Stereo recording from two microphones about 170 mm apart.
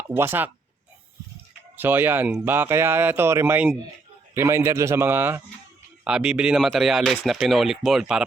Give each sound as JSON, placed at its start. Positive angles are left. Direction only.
{"t": 0.2, "sound": "speech", "side_deg": -10}
{"t": 1.7, "sound": "speech", "side_deg": -10}